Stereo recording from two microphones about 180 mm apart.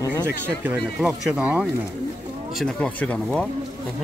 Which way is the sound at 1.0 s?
5° right (ahead or behind).